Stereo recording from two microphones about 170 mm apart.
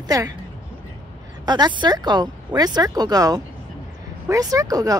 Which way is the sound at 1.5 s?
25° right (ahead or behind).